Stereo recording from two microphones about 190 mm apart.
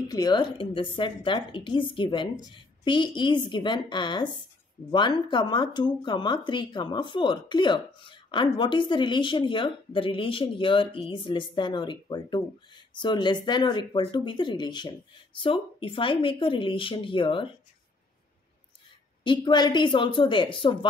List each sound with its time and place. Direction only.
0.1 s speech: 20° left (ahead or behind)
19.2 s speech: 25° left (ahead or behind)